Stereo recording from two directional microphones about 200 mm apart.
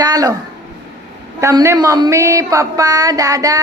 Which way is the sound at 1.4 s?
15° right (ahead or behind).